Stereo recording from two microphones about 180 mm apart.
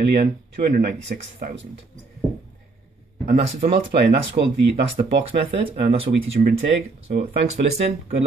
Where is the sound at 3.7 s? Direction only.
70° right (ahead or behind).